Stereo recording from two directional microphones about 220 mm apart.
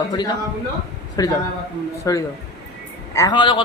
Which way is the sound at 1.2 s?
15° left (ahead or behind).